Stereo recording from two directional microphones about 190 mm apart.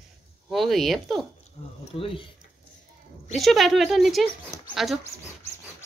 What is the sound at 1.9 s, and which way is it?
Speech, 30° left (ahead or behind).